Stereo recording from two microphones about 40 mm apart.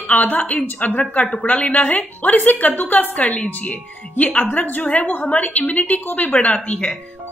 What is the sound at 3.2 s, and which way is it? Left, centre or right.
Speech, left.